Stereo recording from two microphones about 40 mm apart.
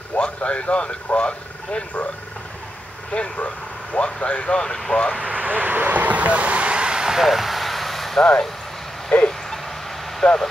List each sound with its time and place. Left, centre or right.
0.1 s speech: left
3.3 s speech: left; by 5.1 s centre
5.3 s speech: right; by 7.2 s centre
7.2 s vehicle: centre
8.2 s speech: centre
9.1 s a sound: left
10.2 s speech: centre